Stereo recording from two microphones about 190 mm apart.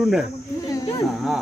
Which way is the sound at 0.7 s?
20° left (ahead or behind).